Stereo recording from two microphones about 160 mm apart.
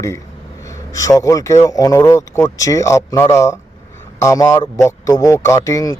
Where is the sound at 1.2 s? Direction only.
20° left (ahead or behind).